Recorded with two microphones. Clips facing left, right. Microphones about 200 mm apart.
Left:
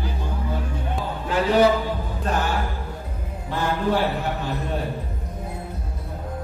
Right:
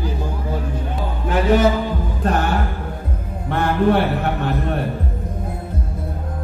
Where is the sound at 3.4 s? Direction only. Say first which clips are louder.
Right 6 dB; 60° right (ahead or behind).